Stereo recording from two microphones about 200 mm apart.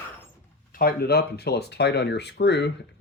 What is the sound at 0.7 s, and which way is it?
Speech, 45° left (ahead or behind).